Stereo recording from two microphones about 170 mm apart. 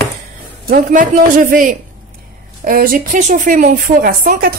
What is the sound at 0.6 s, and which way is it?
A man's voice, 50° right (ahead or behind).